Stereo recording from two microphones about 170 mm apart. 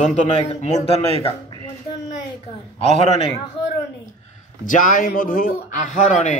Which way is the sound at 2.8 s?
35° left (ahead or behind).